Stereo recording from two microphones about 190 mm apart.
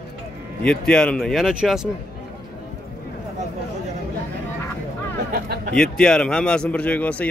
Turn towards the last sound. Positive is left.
turn(degrees=5)  # may be behind; listen again after turning